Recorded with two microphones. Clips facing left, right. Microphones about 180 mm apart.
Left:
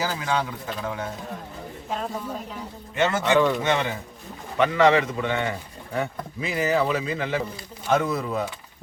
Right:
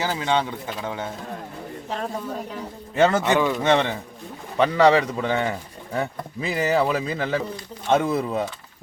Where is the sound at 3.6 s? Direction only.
35° right (ahead or behind).